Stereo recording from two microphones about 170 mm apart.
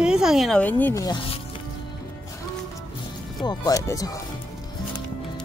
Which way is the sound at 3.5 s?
20° left (ahead or behind).